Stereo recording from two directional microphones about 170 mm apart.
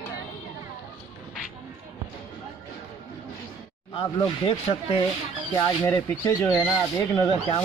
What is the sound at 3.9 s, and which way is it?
Speech, 35° left (ahead or behind).